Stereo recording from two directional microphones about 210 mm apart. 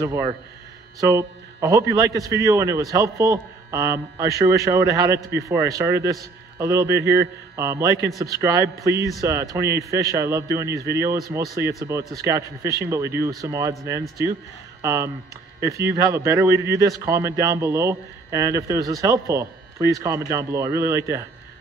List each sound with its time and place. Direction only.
0.0 s speech: 15° right (ahead or behind)